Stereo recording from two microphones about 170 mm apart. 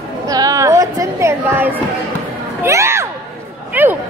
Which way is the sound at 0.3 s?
20° right (ahead or behind).